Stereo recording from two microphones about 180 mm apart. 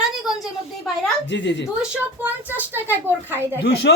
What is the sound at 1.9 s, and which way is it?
A woman's voice, 10° right (ahead or behind).